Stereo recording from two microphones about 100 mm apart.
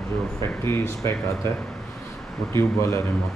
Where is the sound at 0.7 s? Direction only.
25° left (ahead or behind).